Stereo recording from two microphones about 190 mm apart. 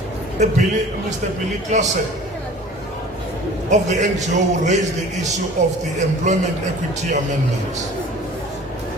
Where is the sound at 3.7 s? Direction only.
40° right (ahead or behind).